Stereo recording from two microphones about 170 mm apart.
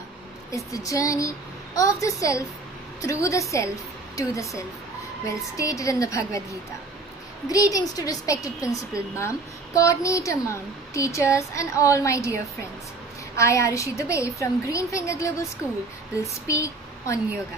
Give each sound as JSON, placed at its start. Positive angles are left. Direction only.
{"t": 0.5, "sound": "a woman's voice", "side_deg": 20}
{"t": 7.4, "sound": "a woman's voice", "side_deg": 20}
{"t": 9.8, "sound": "speech", "side_deg": 20}
{"t": 13.4, "sound": "speech", "side_deg": 15}